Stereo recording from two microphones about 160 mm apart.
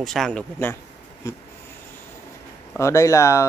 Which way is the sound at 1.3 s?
20° left (ahead or behind).